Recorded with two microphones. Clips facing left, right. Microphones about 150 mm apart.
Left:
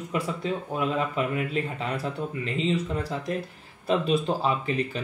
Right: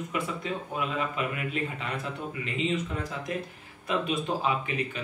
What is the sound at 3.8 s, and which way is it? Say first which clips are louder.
Speech: left 5 dB; 30° left (ahead or behind).